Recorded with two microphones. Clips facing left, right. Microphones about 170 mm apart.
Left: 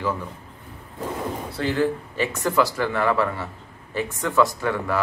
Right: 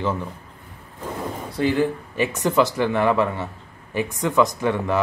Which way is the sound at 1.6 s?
15° right (ahead or behind).